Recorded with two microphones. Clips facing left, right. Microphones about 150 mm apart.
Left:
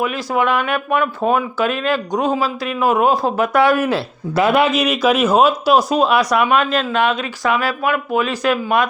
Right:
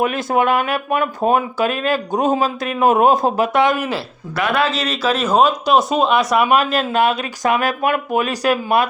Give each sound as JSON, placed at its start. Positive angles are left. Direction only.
{"t": 0.0, "sound": "speech", "side_deg": -55}
{"t": 3.3, "sound": "speech", "side_deg": -35}
{"t": 3.6, "sound": "speech", "side_deg": -15}
{"t": 4.4, "sound": "a man's voice", "side_deg": 25}
{"t": 6.6, "sound": "speech", "side_deg": -40}